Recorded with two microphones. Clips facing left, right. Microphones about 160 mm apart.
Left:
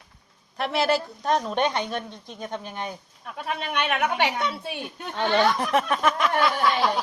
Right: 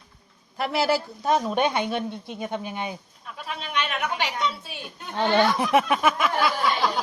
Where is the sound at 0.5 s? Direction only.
5° right (ahead or behind).